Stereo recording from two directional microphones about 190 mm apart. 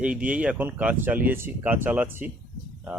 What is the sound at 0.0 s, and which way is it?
Speech, 5° right (ahead or behind).